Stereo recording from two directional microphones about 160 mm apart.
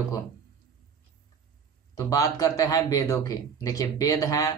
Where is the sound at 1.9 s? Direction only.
20° left (ahead or behind).